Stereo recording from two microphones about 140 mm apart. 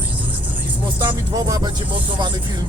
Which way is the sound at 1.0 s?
30° right (ahead or behind).